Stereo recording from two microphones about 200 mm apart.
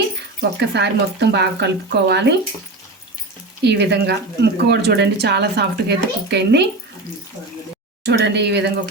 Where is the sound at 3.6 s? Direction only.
60° right (ahead or behind).